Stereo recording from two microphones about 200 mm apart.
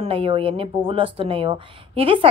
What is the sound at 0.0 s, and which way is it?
A woman's voice, 25° right (ahead or behind).